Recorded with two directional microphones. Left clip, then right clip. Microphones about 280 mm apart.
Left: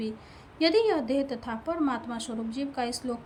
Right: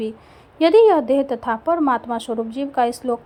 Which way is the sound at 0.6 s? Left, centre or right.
Right.